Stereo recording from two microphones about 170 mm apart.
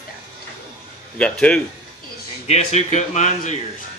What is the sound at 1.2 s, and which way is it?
Speech, 5° left (ahead or behind).